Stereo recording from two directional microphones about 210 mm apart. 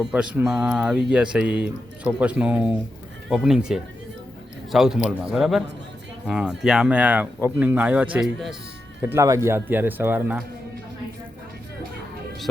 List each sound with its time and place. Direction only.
0.0 s a man's voice: 5° right (ahead or behind)